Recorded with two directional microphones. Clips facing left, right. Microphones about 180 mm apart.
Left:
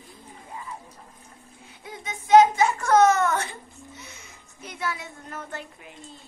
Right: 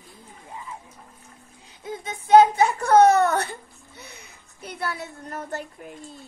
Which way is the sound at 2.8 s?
35° right (ahead or behind).